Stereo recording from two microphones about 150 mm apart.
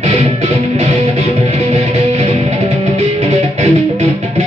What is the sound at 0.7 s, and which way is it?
Music, 50° right (ahead or behind).